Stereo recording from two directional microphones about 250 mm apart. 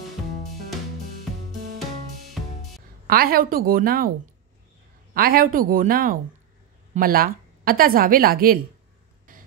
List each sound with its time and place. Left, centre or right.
3.1 s speech: right
5.1 s a woman's voice: right